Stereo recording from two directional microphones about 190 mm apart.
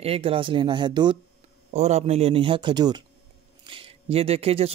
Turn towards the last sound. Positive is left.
turn(degrees=-30)  # may be behind; listen again after turning